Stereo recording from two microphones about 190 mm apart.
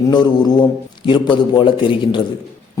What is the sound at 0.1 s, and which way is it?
A man's voice, 20° left (ahead or behind).